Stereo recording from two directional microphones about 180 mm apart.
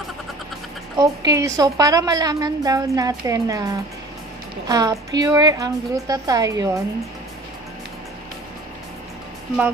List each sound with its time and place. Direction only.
0.9 s a woman's voice: 20° right (ahead or behind)